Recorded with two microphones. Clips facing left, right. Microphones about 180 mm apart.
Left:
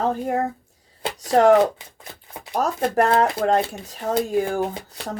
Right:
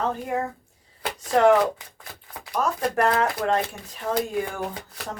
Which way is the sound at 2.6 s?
40° left (ahead or behind).